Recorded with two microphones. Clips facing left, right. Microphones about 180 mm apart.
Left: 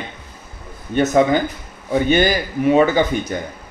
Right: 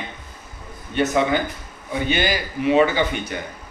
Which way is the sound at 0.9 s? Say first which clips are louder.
Left 5 dB; 45° left (ahead or behind).